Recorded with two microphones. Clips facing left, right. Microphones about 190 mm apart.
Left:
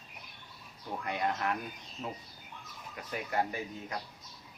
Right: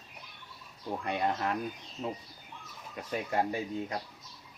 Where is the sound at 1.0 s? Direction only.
25° right (ahead or behind).